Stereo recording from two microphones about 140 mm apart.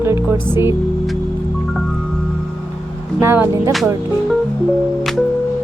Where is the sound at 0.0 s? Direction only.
15° right (ahead or behind).